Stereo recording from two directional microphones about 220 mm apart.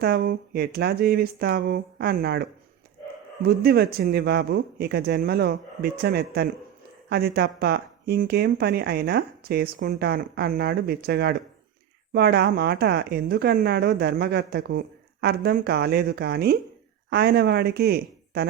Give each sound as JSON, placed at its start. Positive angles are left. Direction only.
{"t": 0.0, "sound": "speech", "side_deg": -45}